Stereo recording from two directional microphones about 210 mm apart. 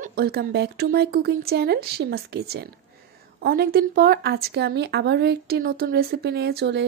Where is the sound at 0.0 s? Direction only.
45° right (ahead or behind).